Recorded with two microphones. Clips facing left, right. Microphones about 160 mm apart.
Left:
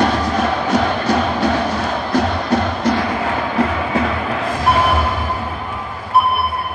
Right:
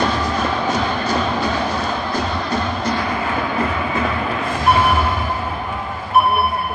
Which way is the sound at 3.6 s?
80° left.